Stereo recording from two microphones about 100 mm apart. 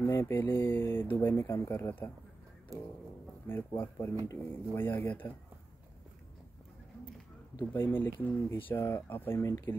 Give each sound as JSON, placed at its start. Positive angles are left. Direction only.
{"t": 0.0, "sound": "speech", "side_deg": 30}
{"t": 2.7, "sound": "a sound", "side_deg": -35}
{"t": 3.4, "sound": "speech", "side_deg": 20}
{"t": 7.7, "sound": "speech", "side_deg": 20}